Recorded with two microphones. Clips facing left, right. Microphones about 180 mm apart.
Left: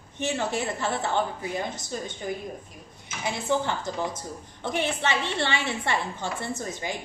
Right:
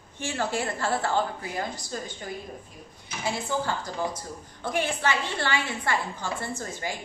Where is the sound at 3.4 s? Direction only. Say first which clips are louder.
Left 3 dB; 20° left (ahead or behind).